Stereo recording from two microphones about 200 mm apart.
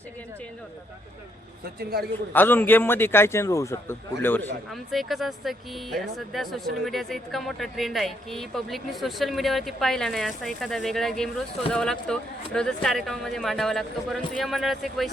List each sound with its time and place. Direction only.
1.8 s a man's voice: 50° right (ahead or behind)
2.3 s a man's voice: 10° left (ahead or behind)